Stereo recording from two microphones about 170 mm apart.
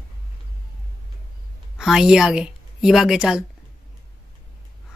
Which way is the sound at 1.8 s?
5° right (ahead or behind).